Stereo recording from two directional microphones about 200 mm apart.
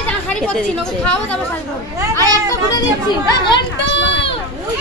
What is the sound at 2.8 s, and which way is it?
Speech, 20° left (ahead or behind).